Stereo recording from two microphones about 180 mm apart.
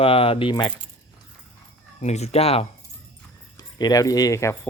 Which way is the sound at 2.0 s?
35° left (ahead or behind).